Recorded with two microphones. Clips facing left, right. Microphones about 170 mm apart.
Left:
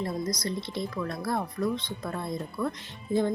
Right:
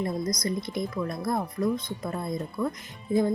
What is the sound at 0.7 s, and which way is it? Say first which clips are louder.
Speech: right 2 dB; 15° right (ahead or behind).